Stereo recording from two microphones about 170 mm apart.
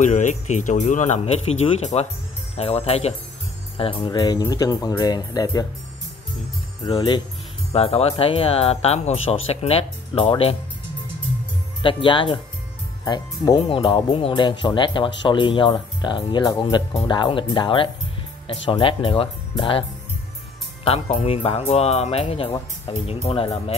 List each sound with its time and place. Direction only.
0.0 s speech: 45° left (ahead or behind); by 5.7 s 20° left (ahead or behind)
6.9 s speech: 25° left (ahead or behind)
11.8 s speech: 30° left (ahead or behind)
20.8 s speech: 40° left (ahead or behind)